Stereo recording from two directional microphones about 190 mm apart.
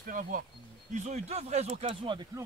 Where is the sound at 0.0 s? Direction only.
45° right (ahead or behind); by 2.4 s 25° right (ahead or behind).